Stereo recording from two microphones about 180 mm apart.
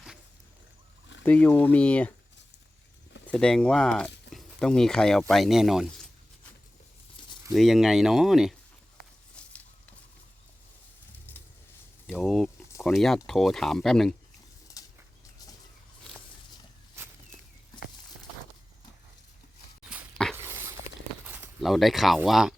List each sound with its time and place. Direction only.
1.2 s speech: 10° left (ahead or behind)
3.2 s speech: 5° left (ahead or behind)
7.2 s a sound: 30° left (ahead or behind)
7.5 s speech: centre (ahead or behind)
12.0 s a sound: 5° left (ahead or behind)
12.8 s speech: centre (ahead or behind)
14.8 s bird flight: 20° left (ahead or behind)
19.9 s dog: centre (ahead or behind)
20.3 s dog: 15° right (ahead or behind)
21.2 s a sound: 10° right (ahead or behind)
21.7 s speech: centre (ahead or behind)